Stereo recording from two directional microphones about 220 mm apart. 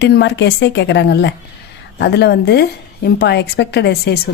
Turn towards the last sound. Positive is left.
turn(degrees=45)  # may be behind; listen again after turning